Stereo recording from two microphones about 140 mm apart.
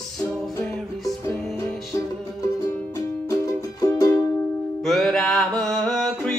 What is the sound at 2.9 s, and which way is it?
Music, 25° left (ahead or behind).